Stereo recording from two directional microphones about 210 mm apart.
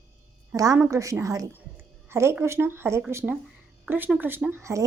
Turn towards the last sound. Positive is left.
turn(degrees=-15)  # may be behind; listen again after turning